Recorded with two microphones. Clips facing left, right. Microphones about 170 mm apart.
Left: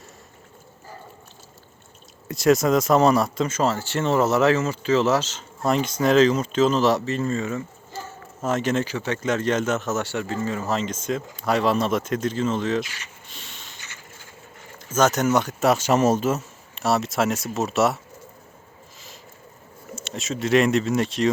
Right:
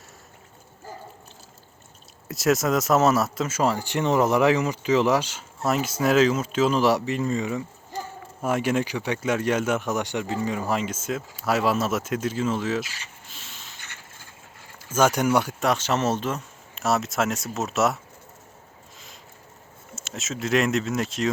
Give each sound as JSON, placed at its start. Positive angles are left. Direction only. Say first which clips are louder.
{"t": 2.2, "sound": "speech", "louder": "left 4 dB", "side_deg": 0}
{"t": 13.7, "sound": "mechanisms", "louder": "left 1 dB", "side_deg": -55}
{"t": 14.9, "sound": "speech", "louder": "left 1 dB", "side_deg": -10}
{"t": 15.6, "sound": "speech", "louder": "left 5 dB", "side_deg": 10}
{"t": 20.0, "sound": "speech", "louder": "left 3 dB", "side_deg": 0}